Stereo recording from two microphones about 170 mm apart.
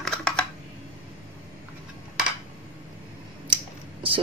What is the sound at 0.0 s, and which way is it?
Computer keyboard, 5° left (ahead or behind).